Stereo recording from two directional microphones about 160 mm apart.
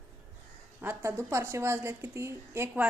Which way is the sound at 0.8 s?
15° right (ahead or behind).